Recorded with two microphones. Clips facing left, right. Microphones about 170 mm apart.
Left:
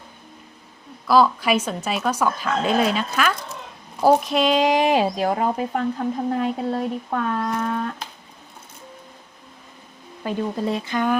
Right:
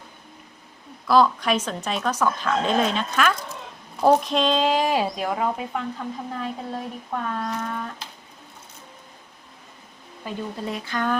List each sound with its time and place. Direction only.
1.0 s speech: 5° left (ahead or behind); by 5.2 s 20° left (ahead or behind)
5.2 s speech: 35° left (ahead or behind); by 8.0 s 55° left (ahead or behind)
10.7 s speech: 25° left (ahead or behind)